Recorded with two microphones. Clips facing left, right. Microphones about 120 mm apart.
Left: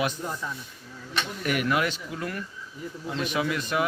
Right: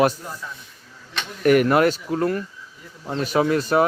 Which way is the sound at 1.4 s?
45° right (ahead or behind).